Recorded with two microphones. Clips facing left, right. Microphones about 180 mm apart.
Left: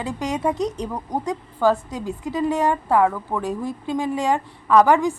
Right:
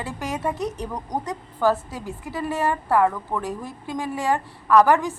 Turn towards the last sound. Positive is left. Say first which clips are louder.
# left 1 dB
turn(degrees=15)  # may be behind; listen again after turning